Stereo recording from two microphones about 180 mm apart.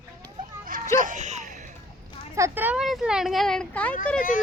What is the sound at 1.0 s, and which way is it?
Speech, 45° right (ahead or behind).